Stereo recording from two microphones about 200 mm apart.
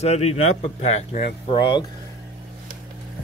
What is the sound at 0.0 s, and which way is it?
Speech, 30° left (ahead or behind).